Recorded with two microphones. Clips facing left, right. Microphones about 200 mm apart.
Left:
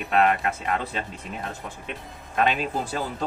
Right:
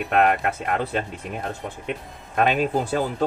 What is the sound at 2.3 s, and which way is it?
Speech, 50° right (ahead or behind).